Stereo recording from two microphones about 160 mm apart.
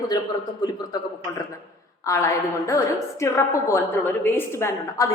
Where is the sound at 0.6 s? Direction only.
25° left (ahead or behind).